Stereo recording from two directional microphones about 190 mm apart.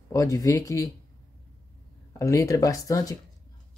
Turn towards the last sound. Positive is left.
turn(degrees=20)  # may be behind; listen again after turning